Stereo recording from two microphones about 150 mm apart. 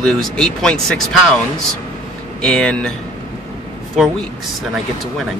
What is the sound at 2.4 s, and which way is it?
Speech, 5° left (ahead or behind).